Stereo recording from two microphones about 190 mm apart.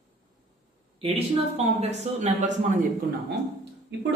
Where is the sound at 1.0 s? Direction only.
30° right (ahead or behind).